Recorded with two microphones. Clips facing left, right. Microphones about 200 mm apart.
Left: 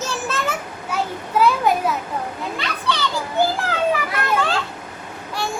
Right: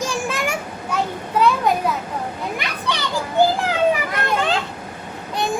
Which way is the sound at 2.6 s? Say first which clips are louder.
Left 1 dB; 15° right (ahead or behind).